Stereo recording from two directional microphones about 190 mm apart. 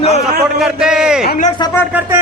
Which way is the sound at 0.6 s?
5° right (ahead or behind).